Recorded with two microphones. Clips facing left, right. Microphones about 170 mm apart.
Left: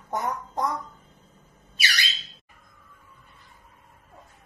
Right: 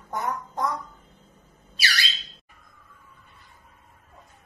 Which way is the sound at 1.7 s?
20° left (ahead or behind).